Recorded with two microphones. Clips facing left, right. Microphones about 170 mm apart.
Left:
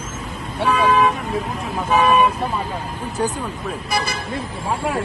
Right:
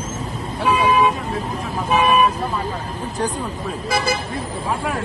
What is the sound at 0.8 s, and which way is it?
Speech, 15° right (ahead or behind).